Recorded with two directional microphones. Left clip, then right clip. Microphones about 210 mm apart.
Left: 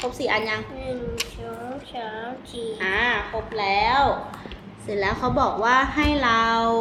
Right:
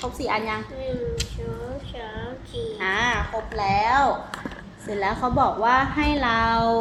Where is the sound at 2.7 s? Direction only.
20° right (ahead or behind).